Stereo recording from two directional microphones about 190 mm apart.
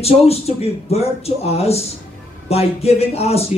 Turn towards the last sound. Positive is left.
turn(degrees=35)  # may be behind; listen again after turning